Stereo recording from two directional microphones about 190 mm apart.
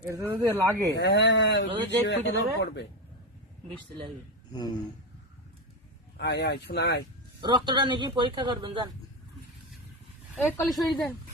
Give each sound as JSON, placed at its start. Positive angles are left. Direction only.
{"t": 0.1, "sound": "speech", "side_deg": -15}
{"t": 0.9, "sound": "speech", "side_deg": 60}
{"t": 4.5, "sound": "a sound", "side_deg": 20}
{"t": 6.1, "sound": "speech", "side_deg": 65}
{"t": 7.4, "sound": "a man's voice", "side_deg": -25}
{"t": 10.3, "sound": "a woman's voice", "side_deg": 0}